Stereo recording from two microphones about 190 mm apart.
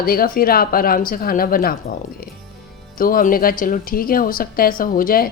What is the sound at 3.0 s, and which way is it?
Speech, 50° left (ahead or behind).